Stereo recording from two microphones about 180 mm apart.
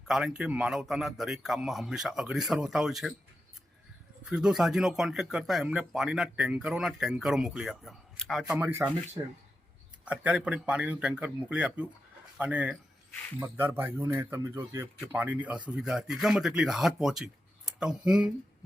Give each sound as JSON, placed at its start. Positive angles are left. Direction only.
{"t": 0.1, "sound": "speech", "side_deg": -5}
{"t": 4.3, "sound": "speech", "side_deg": -5}
{"t": 10.1, "sound": "speech", "side_deg": -5}